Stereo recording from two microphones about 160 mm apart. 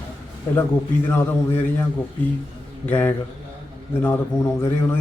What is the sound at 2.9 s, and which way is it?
A man's voice, 10° left (ahead or behind).